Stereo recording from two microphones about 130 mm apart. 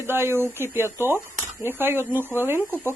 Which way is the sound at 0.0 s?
20° right (ahead or behind).